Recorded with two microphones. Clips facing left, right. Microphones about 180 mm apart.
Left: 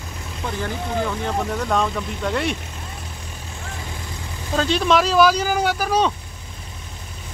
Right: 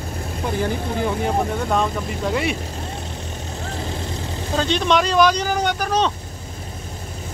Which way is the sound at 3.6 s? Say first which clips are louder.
Right 5 dB; 35° right (ahead or behind).